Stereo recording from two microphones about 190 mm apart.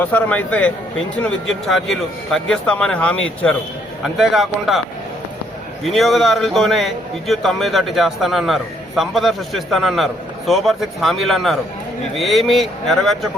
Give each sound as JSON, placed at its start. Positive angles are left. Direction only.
{"t": 0.0, "sound": "a man's voice", "side_deg": 10}
{"t": 5.8, "sound": "a man's voice", "side_deg": 0}